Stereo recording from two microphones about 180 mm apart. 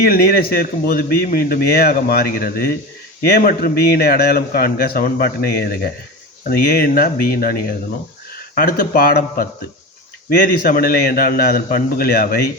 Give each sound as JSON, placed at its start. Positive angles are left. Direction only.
{"t": 0.0, "sound": "a man's voice", "side_deg": 55}
{"t": 10.6, "sound": "a man's voice", "side_deg": 55}